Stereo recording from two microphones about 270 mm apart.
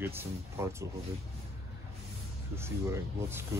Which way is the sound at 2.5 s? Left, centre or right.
Centre.